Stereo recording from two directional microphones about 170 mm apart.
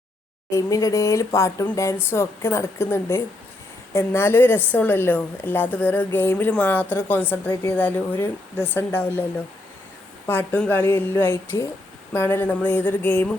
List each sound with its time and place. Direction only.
0.5 s a woman's voice: 20° left (ahead or behind)
10.2 s a woman's voice: 10° left (ahead or behind)